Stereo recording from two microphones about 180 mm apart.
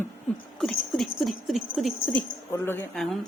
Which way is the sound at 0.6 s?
Centre (ahead or behind).